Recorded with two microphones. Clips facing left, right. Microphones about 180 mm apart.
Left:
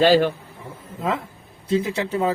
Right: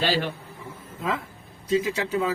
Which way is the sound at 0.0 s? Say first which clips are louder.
Left 10 dB; 45° left (ahead or behind).